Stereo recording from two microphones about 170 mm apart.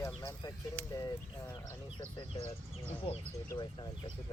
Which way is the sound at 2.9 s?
35° left (ahead or behind).